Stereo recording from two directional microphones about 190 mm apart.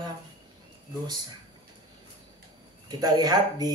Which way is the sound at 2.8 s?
20° right (ahead or behind).